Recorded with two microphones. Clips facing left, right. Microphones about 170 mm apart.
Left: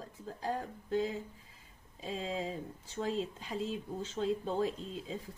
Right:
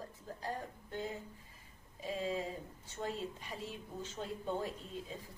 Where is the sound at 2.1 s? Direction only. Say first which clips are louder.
Left 1 dB; 90° left.